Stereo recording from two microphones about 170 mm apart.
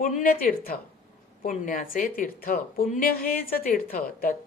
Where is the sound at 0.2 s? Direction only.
55° left (ahead or behind).